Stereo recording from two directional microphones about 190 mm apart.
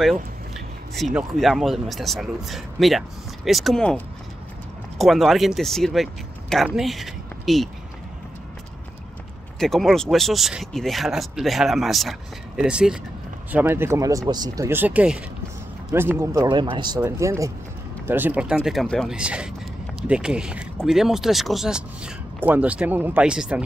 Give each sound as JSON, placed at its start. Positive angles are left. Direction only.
{"t": 0.9, "sound": "speech", "side_deg": 0}
{"t": 9.6, "sound": "speech", "side_deg": 0}